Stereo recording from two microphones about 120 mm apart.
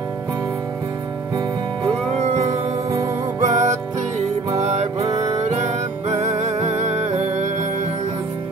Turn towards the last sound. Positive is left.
turn(degrees=-70)  # may be behind; listen again after turning